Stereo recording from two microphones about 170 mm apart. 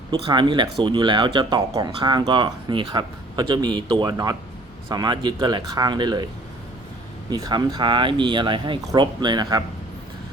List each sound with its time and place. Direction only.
0.1 s speech: 25° right (ahead or behind)
7.3 s speech: 25° right (ahead or behind)